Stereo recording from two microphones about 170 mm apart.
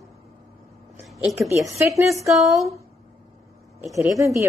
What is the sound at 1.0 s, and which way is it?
Speech, centre (ahead or behind).